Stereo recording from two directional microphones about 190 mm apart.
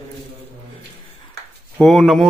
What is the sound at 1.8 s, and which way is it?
Speech, centre (ahead or behind).